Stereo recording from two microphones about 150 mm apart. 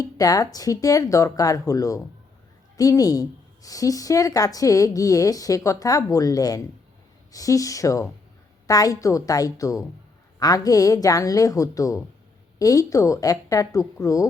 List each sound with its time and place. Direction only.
0.0 s speech: 25° left (ahead or behind)